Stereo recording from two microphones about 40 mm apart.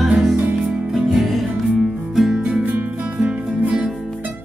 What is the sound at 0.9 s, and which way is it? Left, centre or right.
Music, centre.